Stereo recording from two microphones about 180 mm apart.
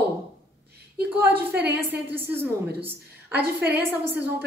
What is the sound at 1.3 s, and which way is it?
Speech, 65° right (ahead or behind).